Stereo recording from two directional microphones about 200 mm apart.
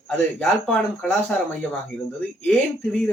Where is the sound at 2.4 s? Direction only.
5° left (ahead or behind).